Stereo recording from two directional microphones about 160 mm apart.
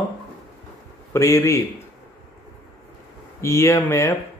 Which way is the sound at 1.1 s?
15° left (ahead or behind).